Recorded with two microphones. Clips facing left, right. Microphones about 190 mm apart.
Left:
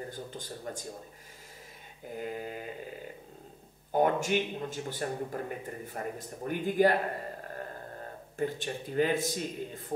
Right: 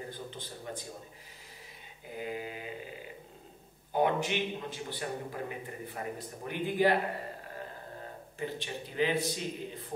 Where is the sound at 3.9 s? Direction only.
45° left (ahead or behind).